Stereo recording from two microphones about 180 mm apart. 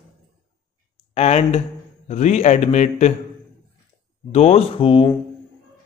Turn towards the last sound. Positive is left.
turn(degrees=30)  # may be behind; listen again after turning